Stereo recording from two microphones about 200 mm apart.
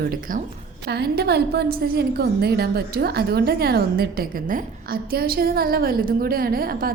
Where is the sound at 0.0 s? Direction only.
45° right (ahead or behind).